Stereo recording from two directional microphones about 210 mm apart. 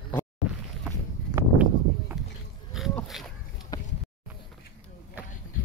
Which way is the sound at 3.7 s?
20° left (ahead or behind).